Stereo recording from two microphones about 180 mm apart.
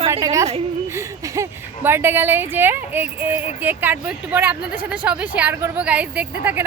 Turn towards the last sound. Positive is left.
turn(degrees=-10)  # may be behind; listen again after turning